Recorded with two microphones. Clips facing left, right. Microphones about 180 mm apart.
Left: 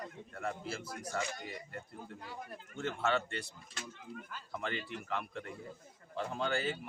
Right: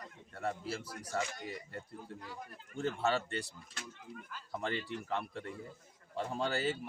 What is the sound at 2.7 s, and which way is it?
Speech, 35° right (ahead or behind).